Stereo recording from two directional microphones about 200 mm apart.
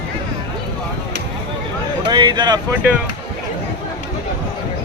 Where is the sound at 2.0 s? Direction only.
20° right (ahead or behind).